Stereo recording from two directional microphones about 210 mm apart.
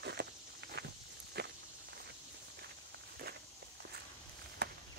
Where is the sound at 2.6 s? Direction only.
50° right (ahead or behind).